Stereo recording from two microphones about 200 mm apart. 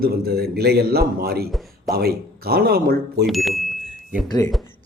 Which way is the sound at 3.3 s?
Centre (ahead or behind).